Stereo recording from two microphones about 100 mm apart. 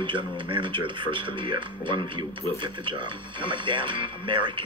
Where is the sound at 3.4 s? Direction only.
55° right (ahead or behind).